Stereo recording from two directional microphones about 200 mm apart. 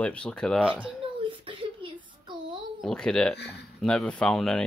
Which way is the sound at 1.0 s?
25° right (ahead or behind).